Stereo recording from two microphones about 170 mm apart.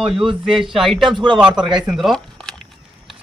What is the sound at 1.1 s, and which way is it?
Speech, 30° right (ahead or behind).